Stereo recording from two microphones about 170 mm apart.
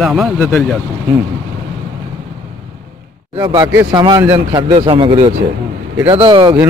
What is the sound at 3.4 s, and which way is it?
Speech, 20° right (ahead or behind).